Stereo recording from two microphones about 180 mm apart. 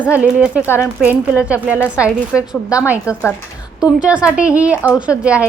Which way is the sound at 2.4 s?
15° left (ahead or behind).